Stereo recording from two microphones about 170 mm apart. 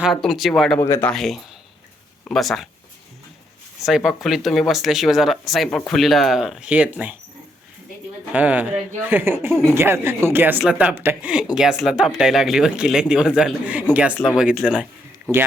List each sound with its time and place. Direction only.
0.0 s speech: centre (ahead or behind)
0.8 s speech: 15° left (ahead or behind)
1.1 s speech: centre (ahead or behind)
3.8 s speech: centre (ahead or behind)
8.3 s speech: 10° right (ahead or behind)